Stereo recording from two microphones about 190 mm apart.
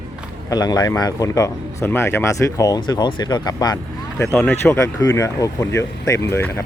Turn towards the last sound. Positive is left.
turn(degrees=15)  # may be behind; listen again after turning